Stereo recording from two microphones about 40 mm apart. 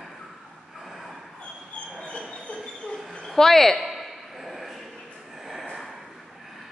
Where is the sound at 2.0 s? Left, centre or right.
Left.